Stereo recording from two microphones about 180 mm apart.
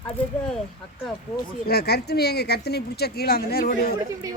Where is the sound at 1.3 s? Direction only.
60° left (ahead or behind).